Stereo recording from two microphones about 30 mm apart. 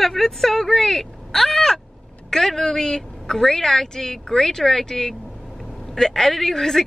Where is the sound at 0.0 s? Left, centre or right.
Centre.